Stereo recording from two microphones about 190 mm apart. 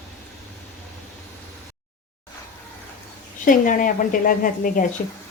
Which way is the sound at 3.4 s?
45° left (ahead or behind).